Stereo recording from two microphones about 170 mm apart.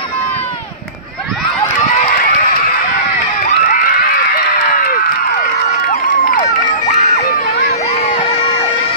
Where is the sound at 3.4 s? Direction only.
50° left (ahead or behind).